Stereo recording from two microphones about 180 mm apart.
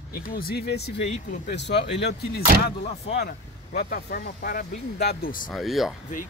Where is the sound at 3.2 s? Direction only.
55° left (ahead or behind).